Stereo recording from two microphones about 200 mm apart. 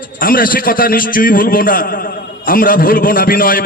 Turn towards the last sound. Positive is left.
turn(degrees=45)  # may be behind; listen again after turning